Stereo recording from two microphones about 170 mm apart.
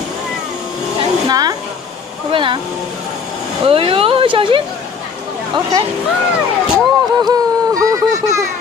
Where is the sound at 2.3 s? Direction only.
30° right (ahead or behind).